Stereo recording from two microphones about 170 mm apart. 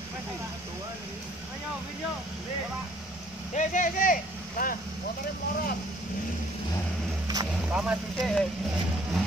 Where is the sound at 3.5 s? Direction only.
50° left (ahead or behind).